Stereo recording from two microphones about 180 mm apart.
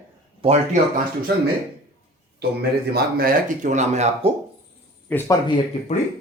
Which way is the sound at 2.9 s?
60° right (ahead or behind).